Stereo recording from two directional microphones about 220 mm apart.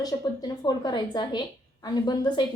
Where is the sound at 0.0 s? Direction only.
15° left (ahead or behind).